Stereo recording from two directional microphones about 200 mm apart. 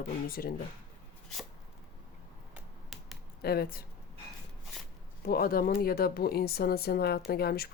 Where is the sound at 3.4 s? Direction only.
50° left (ahead or behind).